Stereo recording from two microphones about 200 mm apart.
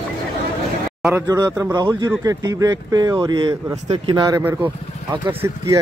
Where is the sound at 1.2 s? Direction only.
20° right (ahead or behind).